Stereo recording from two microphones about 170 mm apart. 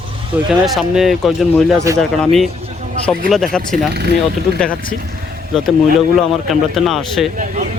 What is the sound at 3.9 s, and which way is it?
Speech, 75° right (ahead or behind).